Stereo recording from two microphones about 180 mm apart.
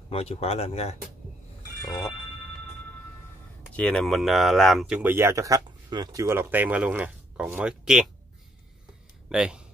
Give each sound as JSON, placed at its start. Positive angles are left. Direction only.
{"t": 0.1, "sound": "speech", "side_deg": 35}
{"t": 3.7, "sound": "speech", "side_deg": 5}
{"t": 9.3, "sound": "speech", "side_deg": -5}